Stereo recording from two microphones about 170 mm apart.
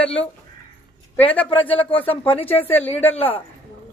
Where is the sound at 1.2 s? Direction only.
10° left (ahead or behind).